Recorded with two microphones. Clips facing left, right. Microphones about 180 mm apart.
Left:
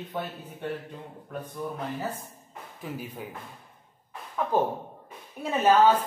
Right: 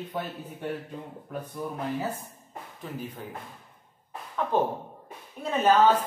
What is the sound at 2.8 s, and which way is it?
Speech, 10° left (ahead or behind).